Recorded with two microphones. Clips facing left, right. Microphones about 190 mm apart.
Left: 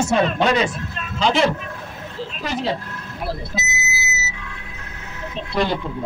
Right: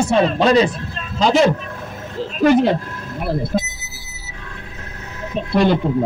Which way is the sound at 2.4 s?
55° right (ahead or behind).